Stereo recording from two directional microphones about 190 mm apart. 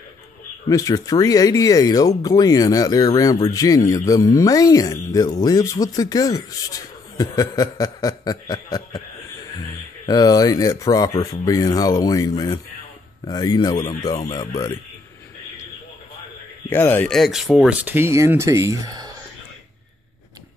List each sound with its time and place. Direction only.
0.7 s speech: 15° left (ahead or behind)
10.0 s speech: 20° left (ahead or behind)
16.6 s speech: 10° left (ahead or behind); by 19.1 s 20° right (ahead or behind)